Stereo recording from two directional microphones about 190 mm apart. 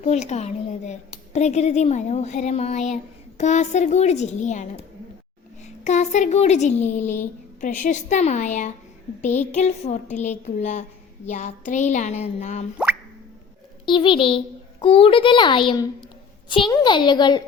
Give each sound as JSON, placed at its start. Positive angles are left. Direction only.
{"t": 0.0, "sound": "speech", "side_deg": 35}
{"t": 5.6, "sound": "speech", "side_deg": 35}
{"t": 12.7, "sound": "plop", "side_deg": -10}
{"t": 13.8, "sound": "a child's voice", "side_deg": 25}